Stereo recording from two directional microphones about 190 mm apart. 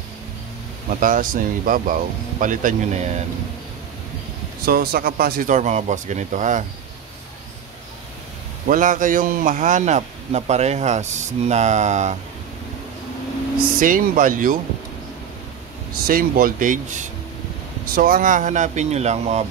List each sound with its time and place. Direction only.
0.8 s speech: 45° right (ahead or behind)
4.6 s speech: 50° right (ahead or behind)
8.6 s speech: 45° right (ahead or behind)
13.7 s speech: 45° right (ahead or behind)
16.1 s speech: 50° right (ahead or behind)